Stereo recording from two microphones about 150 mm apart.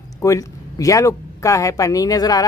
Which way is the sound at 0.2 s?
20° left (ahead or behind).